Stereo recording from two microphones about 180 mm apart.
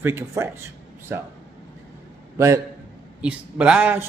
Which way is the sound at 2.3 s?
15° right (ahead or behind).